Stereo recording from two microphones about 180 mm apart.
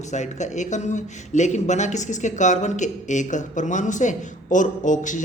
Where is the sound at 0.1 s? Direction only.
40° left (ahead or behind).